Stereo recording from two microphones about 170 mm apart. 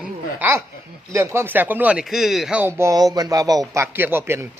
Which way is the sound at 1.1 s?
15° right (ahead or behind).